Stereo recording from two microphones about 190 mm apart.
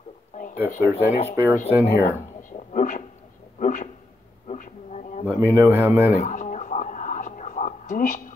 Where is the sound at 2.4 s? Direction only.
40° left (ahead or behind).